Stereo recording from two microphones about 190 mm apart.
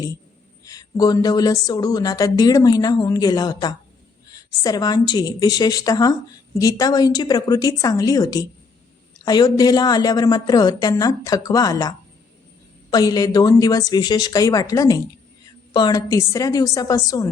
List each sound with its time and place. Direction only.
0.6 s speech: 20° left (ahead or behind)